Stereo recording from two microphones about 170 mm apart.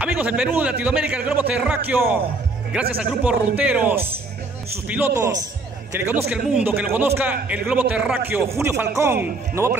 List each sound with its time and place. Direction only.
0.0 s a sound: 5° right (ahead or behind)
0.6 s a man's voice: 10° right (ahead or behind)
5.1 s a man's voice: 20° right (ahead or behind)
6.3 s a man's voice: 10° right (ahead or behind)